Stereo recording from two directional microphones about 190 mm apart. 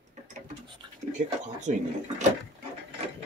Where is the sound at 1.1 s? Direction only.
40° right (ahead or behind).